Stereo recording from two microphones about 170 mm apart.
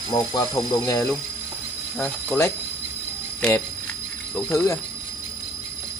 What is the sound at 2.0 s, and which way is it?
Speech, 5° left (ahead or behind).